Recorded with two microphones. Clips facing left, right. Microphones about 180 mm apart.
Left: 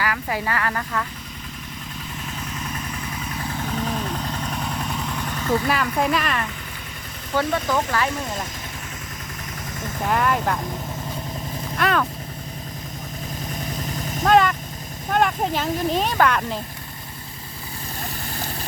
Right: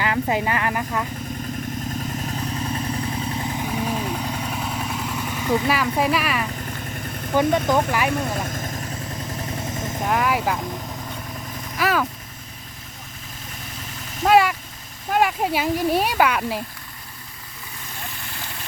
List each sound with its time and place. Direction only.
0.0 s speech: 20° right (ahead or behind)
2.2 s vehicle: 30° right (ahead or behind); by 5.9 s 5° right (ahead or behind)
6.0 s speech: 5° right (ahead or behind)
7.3 s speech: 15° right (ahead or behind)
10.1 s speech: 5° right (ahead or behind)
11.8 s speech: 5° right (ahead or behind)
14.3 s speech: 5° right (ahead or behind)